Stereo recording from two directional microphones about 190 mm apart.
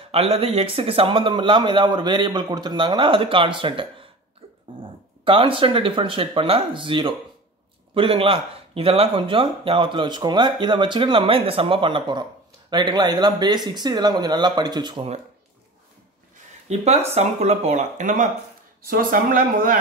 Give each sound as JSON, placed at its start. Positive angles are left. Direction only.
{"t": 0.1, "sound": "speech", "side_deg": -30}
{"t": 5.2, "sound": "speech", "side_deg": -25}
{"t": 16.6, "sound": "speech", "side_deg": -35}